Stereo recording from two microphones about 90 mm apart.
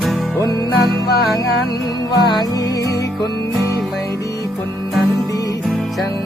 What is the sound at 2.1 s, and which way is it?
Music, 55° left (ahead or behind).